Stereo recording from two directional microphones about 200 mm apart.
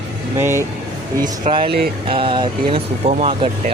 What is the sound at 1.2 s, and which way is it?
Speech, 30° right (ahead or behind).